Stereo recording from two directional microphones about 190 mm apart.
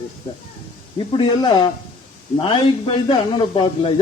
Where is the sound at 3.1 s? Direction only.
25° left (ahead or behind).